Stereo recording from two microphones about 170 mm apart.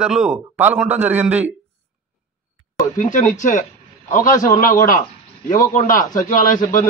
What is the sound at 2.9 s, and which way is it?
A man's voice, 50° left (ahead or behind).